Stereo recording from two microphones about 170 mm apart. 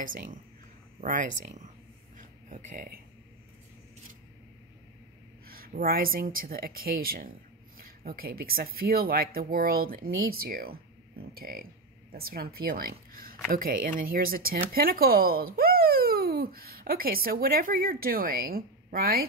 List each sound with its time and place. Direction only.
0.0 s speech: 55° right (ahead or behind)
2.1 s a sound: 50° right (ahead or behind)
5.5 s speech: 60° right (ahead or behind)